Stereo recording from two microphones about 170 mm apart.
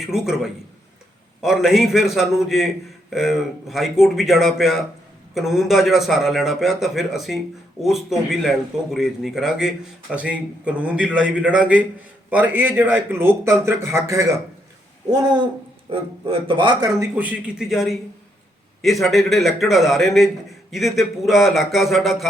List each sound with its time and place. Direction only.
0.0 s a man's voice: 5° right (ahead or behind); by 16.9 s 30° right (ahead or behind)
17.0 s a man's voice: 10° right (ahead or behind)